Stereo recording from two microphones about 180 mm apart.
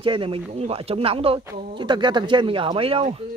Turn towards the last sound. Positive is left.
turn(degrees=-30)  # may be behind; listen again after turning